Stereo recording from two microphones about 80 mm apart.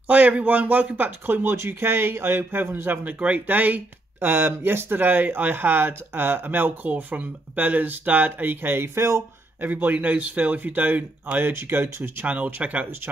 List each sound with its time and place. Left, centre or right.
0.1 s speech: centre
9.6 s speech: right